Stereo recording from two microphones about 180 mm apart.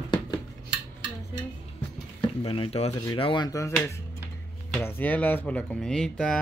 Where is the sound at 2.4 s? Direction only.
30° left (ahead or behind).